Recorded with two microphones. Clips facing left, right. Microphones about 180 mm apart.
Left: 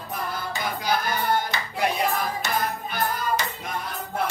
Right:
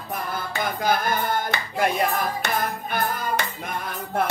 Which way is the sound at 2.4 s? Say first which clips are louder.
Right 1 dB; 60° right (ahead or behind).